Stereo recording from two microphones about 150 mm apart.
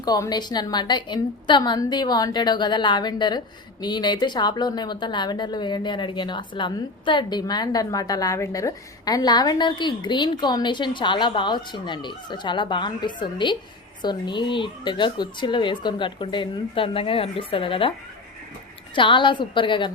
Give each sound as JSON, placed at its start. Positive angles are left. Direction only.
{"t": 0.0, "sound": "a woman's voice", "side_deg": 25}
{"t": 18.9, "sound": "speech", "side_deg": 35}